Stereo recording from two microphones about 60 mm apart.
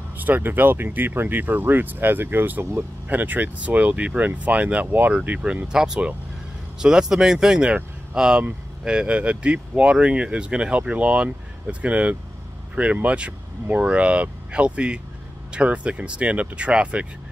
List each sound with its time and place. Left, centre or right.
0.2 s speech: right